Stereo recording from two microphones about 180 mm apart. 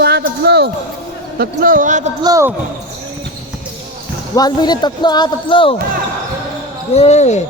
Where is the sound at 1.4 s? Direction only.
50° right (ahead or behind).